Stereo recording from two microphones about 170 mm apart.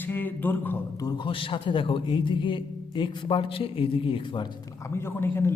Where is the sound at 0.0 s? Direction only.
10° left (ahead or behind).